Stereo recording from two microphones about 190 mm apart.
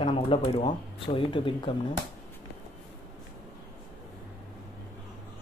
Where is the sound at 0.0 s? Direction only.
30° left (ahead or behind).